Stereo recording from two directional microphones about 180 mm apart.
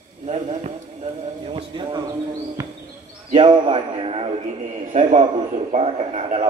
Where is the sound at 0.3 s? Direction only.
35° right (ahead or behind).